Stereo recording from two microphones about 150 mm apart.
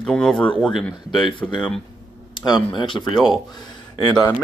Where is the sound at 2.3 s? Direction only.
30° left (ahead or behind).